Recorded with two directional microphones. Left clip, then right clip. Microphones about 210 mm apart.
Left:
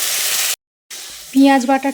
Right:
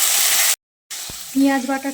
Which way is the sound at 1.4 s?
40° left (ahead or behind).